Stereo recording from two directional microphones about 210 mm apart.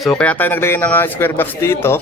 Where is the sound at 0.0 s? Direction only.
5° left (ahead or behind).